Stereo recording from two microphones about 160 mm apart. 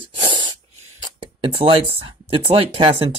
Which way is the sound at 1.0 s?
30° right (ahead or behind).